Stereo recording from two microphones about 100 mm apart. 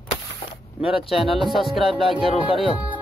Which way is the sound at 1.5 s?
Centre (ahead or behind).